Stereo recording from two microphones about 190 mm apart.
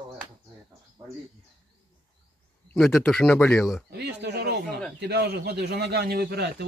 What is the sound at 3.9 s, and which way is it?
A man's voice, 60° right (ahead or behind).